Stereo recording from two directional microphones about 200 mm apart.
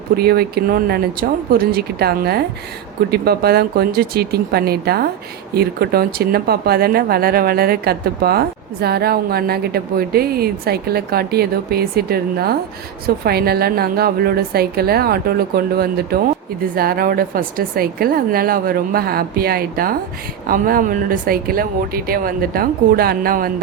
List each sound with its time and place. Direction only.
0.2 s speech: 50° right (ahead or behind)